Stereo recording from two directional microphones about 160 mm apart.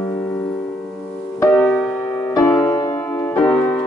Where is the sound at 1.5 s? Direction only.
5° left (ahead or behind).